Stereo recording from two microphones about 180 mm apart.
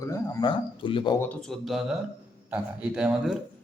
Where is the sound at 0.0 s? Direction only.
15° left (ahead or behind).